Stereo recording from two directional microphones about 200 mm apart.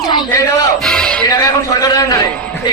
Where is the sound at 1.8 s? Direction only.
15° left (ahead or behind).